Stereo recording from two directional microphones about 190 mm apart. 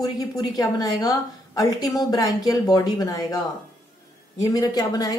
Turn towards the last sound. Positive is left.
turn(degrees=20)  # may be behind; listen again after turning